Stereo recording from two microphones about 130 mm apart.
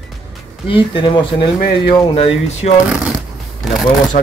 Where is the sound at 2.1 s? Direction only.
50° left (ahead or behind).